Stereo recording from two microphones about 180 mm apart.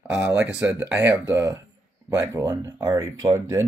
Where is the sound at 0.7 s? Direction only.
15° right (ahead or behind).